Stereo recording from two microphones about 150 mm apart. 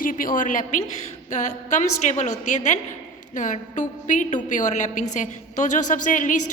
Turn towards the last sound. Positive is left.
turn(degrees=55)  # may be behind; listen again after turning